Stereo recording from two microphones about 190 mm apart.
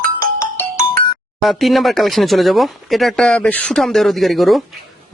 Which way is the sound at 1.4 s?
Centre (ahead or behind).